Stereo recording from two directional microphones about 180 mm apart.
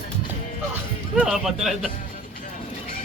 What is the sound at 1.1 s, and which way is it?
Speech, 5° right (ahead or behind).